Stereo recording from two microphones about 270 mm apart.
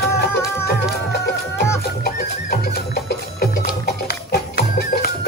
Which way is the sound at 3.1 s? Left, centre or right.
Left.